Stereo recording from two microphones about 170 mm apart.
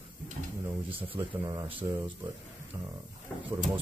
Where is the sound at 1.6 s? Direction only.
10° right (ahead or behind).